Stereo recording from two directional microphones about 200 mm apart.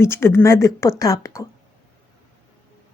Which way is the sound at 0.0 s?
10° left (ahead or behind).